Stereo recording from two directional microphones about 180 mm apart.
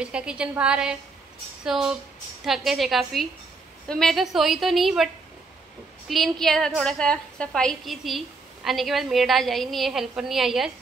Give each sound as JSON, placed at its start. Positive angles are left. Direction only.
{"t": 0.0, "sound": "a woman's voice", "side_deg": -5}